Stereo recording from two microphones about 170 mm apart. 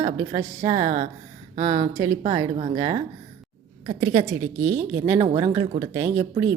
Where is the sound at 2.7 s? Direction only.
20° right (ahead or behind).